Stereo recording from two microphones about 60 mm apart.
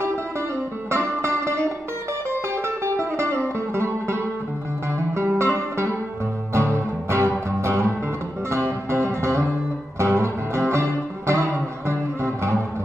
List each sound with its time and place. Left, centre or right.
0.8 s music: right